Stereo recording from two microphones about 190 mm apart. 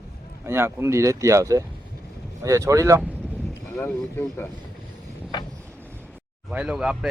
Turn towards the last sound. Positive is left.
turn(degrees=-5)  # may be behind; listen again after turning